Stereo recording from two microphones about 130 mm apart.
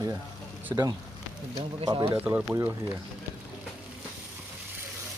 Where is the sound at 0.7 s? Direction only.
25° right (ahead or behind).